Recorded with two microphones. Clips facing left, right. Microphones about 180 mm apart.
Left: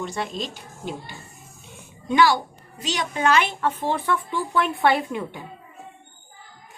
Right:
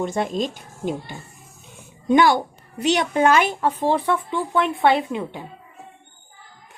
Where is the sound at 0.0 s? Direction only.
50° right (ahead or behind).